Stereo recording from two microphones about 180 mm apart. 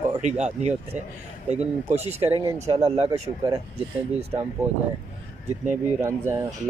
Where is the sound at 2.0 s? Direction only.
10° right (ahead or behind).